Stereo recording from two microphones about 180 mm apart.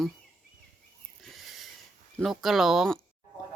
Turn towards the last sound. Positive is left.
turn(degrees=0)  # may be behind; listen again after turning